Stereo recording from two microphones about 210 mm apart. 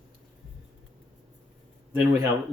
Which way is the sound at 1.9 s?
10° right (ahead or behind).